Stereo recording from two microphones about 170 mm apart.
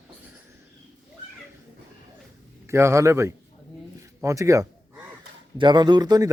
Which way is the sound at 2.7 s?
15° right (ahead or behind).